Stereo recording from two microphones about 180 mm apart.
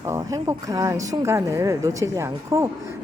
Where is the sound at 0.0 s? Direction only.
20° right (ahead or behind).